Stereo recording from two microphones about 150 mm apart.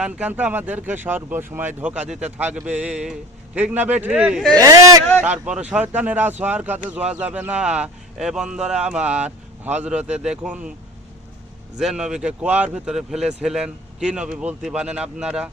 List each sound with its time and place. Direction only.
0.0 s speech: 10° right (ahead or behind)
4.5 s speech: 25° right (ahead or behind)
5.2 s speech: 10° right (ahead or behind)
11.8 s speech: 5° right (ahead or behind)